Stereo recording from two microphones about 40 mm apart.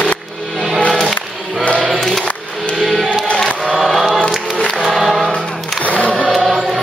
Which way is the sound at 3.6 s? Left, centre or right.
Centre.